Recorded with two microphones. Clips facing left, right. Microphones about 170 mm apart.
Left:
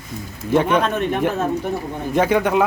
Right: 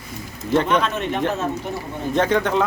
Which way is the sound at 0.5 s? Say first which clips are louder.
Left 2 dB; 10° left (ahead or behind).